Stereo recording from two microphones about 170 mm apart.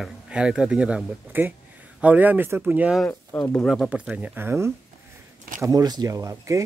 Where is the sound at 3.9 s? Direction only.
5° right (ahead or behind).